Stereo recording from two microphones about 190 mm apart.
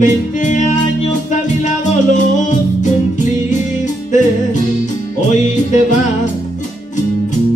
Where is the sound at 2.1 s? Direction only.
40° left (ahead or behind).